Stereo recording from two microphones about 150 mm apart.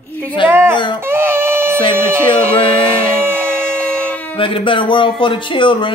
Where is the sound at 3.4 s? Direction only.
10° left (ahead or behind).